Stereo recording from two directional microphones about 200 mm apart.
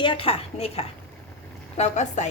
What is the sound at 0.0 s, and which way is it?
A woman's voice, 25° left (ahead or behind).